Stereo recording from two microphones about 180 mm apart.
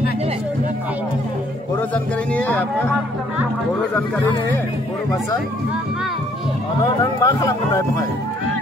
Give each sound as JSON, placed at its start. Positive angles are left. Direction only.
{"t": 2.3, "sound": "speech", "side_deg": 10}
{"t": 6.8, "sound": "speech", "side_deg": 20}